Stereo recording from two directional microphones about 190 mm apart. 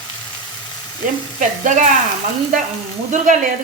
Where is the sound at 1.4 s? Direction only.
40° right (ahead or behind).